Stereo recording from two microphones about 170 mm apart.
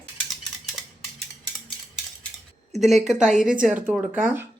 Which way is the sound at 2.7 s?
Centre (ahead or behind).